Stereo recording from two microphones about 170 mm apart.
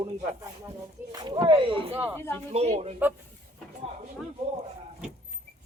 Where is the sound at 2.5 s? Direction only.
40° right (ahead or behind).